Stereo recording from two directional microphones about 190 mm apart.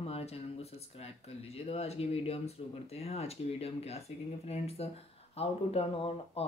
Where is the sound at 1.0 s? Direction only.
30° left (ahead or behind).